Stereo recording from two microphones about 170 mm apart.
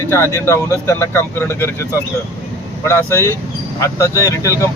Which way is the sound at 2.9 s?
15° left (ahead or behind).